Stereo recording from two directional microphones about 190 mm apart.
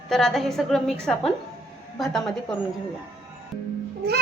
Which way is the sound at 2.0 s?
Centre (ahead or behind).